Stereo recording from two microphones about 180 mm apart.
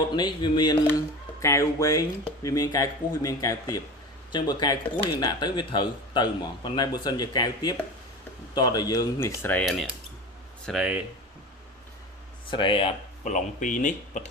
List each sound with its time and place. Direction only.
0.1 s speech: 25° left (ahead or behind)
10.7 s speech: 5° right (ahead or behind)
12.5 s speech: 30° left (ahead or behind)
13.2 s speech: 45° left (ahead or behind)